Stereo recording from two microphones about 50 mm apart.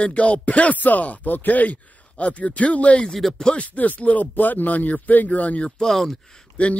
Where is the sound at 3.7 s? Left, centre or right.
Left.